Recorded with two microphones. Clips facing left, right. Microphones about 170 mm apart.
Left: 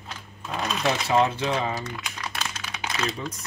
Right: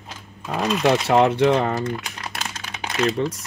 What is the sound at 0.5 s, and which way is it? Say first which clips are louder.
Speech: right 7 dB; 70° right (ahead or behind).